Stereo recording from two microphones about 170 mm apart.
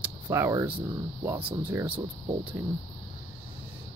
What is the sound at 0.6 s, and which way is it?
Speech, 30° right (ahead or behind).